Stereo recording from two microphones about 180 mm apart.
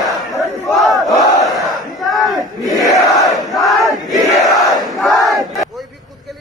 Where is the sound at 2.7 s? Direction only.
20° left (ahead or behind).